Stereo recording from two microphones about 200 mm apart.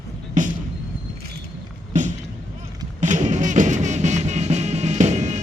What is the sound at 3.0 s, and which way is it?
Music, 35° right (ahead or behind).